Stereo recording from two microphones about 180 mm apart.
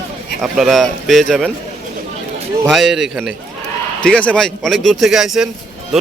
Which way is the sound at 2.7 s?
Centre (ahead or behind).